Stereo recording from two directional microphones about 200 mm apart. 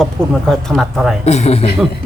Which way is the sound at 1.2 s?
35° left (ahead or behind).